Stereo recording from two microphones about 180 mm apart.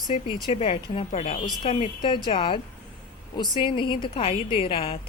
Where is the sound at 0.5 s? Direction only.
30° left (ahead or behind).